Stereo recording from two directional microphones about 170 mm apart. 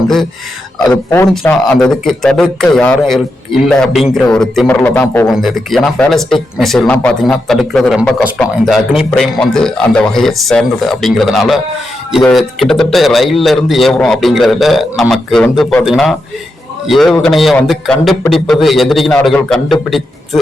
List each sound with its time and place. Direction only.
0.9 s speech: 15° left (ahead or behind)
1.3 s speech: 5° left (ahead or behind)
5.3 s speech: centre (ahead or behind)